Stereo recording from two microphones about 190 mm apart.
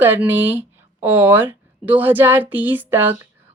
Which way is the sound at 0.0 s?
10° right (ahead or behind).